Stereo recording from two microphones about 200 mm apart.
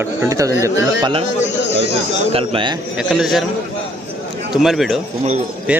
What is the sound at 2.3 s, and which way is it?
Speech, 25° right (ahead or behind).